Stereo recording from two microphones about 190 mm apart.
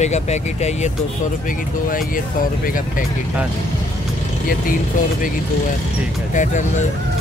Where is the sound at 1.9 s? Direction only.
45° left (ahead or behind).